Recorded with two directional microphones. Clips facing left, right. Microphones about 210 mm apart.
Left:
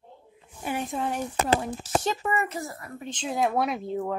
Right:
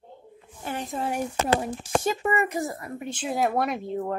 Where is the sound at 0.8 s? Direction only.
Centre (ahead or behind).